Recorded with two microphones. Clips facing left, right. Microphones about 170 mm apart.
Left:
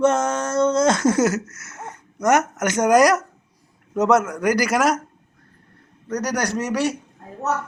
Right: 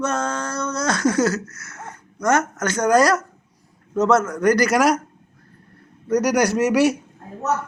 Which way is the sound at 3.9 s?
15° left (ahead or behind).